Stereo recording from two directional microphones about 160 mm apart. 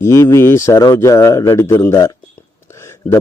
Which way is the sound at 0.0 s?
15° left (ahead or behind).